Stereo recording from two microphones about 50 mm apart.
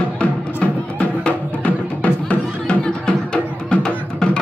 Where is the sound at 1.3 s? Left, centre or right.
Left.